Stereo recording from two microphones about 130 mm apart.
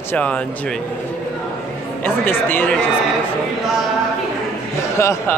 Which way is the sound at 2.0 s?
15° left (ahead or behind).